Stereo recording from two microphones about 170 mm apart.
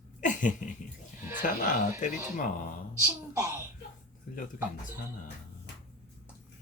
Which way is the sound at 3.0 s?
15° right (ahead or behind).